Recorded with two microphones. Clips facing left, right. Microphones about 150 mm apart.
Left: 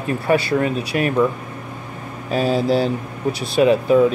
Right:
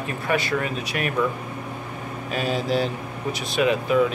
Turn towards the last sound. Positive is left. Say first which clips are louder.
# left 6 dB
turn(degrees=35)  # may be behind; listen again after turning